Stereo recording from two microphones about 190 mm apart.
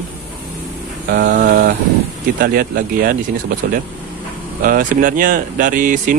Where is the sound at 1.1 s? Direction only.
50° right (ahead or behind).